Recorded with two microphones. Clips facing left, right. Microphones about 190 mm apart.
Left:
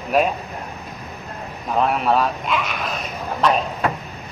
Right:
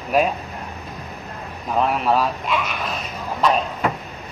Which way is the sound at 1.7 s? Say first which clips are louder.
Left 1 dB; centre (ahead or behind).